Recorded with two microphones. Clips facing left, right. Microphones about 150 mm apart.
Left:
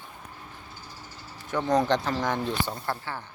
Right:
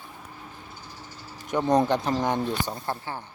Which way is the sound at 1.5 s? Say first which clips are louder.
Right 2 dB; 20° right (ahead or behind).